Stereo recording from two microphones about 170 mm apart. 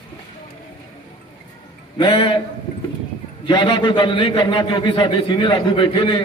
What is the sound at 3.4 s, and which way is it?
A man's voice, 25° left (ahead or behind).